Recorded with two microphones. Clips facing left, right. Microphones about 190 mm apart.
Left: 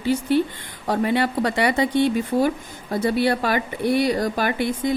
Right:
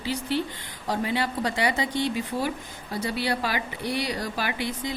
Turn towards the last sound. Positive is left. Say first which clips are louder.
# left 7 dB
turn(degrees=50)  # may be behind; listen again after turning